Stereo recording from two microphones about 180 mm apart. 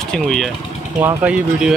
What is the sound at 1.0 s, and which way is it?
Speech, 10° right (ahead or behind).